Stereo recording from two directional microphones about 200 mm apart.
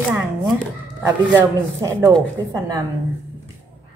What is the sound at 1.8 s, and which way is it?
A woman's voice, 15° right (ahead or behind).